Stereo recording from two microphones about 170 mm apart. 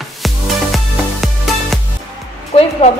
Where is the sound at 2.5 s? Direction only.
40° left (ahead or behind).